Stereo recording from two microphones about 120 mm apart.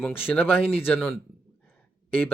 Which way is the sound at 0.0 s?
15° left (ahead or behind).